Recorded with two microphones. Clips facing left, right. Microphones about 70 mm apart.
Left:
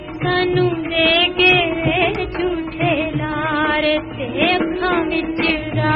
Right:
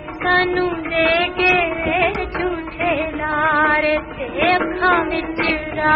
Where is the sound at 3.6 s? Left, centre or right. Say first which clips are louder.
Right 1 dB; right.